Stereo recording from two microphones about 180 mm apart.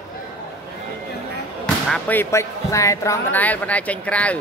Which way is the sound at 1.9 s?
10° left (ahead or behind).